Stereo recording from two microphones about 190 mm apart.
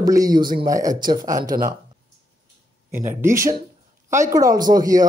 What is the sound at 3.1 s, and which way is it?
Speech, 15° right (ahead or behind).